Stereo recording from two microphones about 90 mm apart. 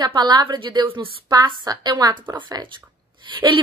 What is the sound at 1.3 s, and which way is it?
A woman's voice, 50° right (ahead or behind).